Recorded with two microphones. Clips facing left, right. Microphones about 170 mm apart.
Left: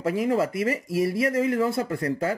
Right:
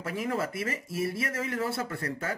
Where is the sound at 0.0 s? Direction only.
30° left (ahead or behind).